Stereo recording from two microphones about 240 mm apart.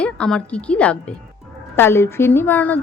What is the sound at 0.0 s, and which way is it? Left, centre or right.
A woman's voice, centre.